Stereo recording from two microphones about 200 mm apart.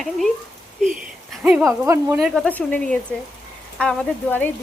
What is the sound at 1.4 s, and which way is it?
Speech, 5° right (ahead or behind).